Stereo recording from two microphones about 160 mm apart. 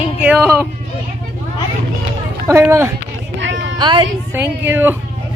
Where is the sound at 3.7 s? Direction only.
30° right (ahead or behind).